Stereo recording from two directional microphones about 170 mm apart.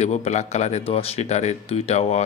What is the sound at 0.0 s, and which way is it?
Speech, 40° left (ahead or behind).